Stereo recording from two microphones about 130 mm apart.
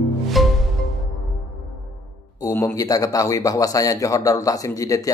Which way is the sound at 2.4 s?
25° left (ahead or behind).